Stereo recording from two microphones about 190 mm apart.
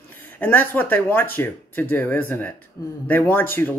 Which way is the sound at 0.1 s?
10° left (ahead or behind).